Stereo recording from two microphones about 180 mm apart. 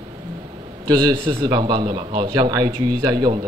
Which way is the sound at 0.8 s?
25° right (ahead or behind).